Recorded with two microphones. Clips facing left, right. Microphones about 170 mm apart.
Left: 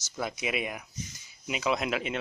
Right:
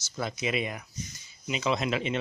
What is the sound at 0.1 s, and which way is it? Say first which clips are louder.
Speech: right 1 dB; 10° left (ahead or behind).